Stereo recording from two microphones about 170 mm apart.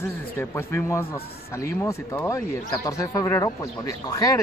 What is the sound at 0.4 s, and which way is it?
A man's voice, 15° left (ahead or behind).